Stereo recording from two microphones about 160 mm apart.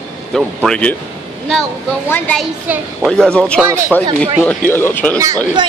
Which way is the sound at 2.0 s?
10° left (ahead or behind).